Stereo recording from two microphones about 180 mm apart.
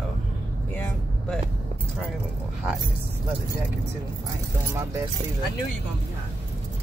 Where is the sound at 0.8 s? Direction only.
10° left (ahead or behind).